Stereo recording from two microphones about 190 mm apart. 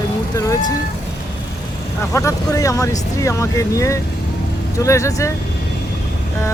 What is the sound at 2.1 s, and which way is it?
Speech, 15° left (ahead or behind).